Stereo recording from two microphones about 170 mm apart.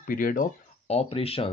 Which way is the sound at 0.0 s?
55° left (ahead or behind).